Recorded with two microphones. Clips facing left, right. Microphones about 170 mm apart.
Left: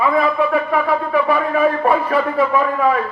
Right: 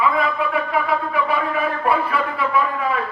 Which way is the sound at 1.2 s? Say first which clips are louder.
Left 6 dB; 40° left (ahead or behind).